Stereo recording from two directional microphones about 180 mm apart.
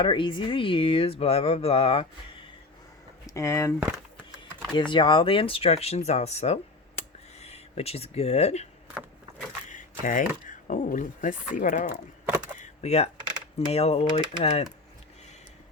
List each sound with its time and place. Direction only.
0.0 s speech: 25° left (ahead or behind)
3.2 s speech: 15° left (ahead or behind)
4.7 s speech: 25° left (ahead or behind)
9.6 s a sound: 45° left (ahead or behind)
10.7 s speech: 45° left (ahead or behind)
12.5 s a sound: 40° left (ahead or behind)
13.7 s speech: 35° left (ahead or behind)